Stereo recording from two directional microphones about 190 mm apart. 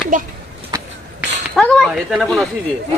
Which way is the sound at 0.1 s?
45° right (ahead or behind).